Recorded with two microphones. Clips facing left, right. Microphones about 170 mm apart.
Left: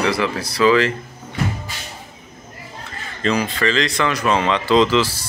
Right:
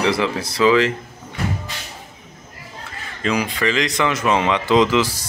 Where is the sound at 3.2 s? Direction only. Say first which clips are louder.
Left 1 dB; 10° right (ahead or behind).